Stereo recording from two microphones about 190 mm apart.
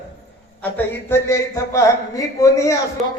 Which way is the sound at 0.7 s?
10° left (ahead or behind).